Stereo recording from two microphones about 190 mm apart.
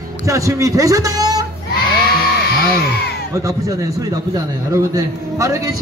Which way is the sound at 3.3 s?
15° right (ahead or behind).